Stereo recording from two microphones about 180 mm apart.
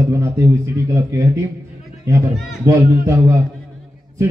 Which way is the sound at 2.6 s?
15° right (ahead or behind).